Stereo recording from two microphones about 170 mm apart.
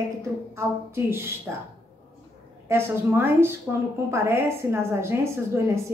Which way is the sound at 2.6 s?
15° right (ahead or behind).